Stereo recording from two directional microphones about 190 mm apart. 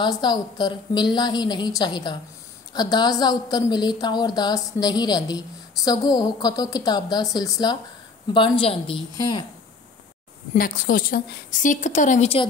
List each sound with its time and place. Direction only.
0.0 s a woman's voice: 20° left (ahead or behind)
10.5 s a woman's voice: 45° left (ahead or behind)